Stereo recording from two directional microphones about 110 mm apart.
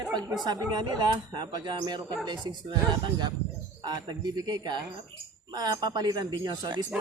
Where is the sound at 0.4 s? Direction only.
40° right (ahead or behind).